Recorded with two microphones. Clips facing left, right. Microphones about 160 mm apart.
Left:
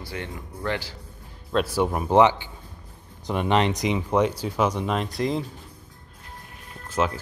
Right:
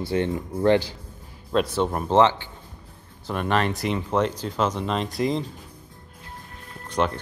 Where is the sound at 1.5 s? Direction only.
5° left (ahead or behind).